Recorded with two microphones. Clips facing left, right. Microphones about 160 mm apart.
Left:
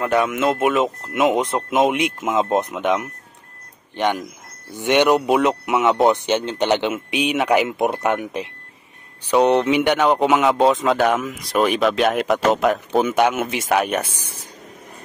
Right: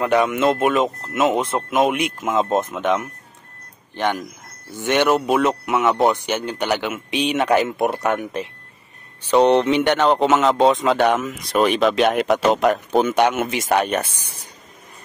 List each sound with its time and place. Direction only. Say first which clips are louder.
0.0 s speech: right 1 dB; centre (ahead or behind); by 7.0 s 20° left (ahead or behind)
7.1 s speech: right 1 dB; 10° left (ahead or behind)